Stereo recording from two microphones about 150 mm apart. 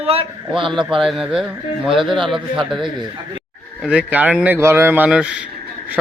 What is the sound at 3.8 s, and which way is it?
Speech, 10° right (ahead or behind).